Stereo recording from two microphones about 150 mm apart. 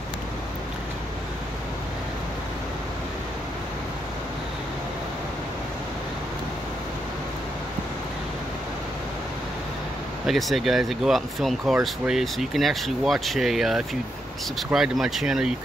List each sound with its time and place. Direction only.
10.2 s speech: centre (ahead or behind)